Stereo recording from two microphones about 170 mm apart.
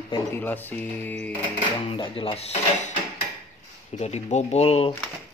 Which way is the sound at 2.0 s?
30° left (ahead or behind).